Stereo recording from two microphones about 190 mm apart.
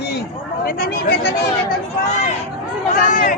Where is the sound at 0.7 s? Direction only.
60° left (ahead or behind).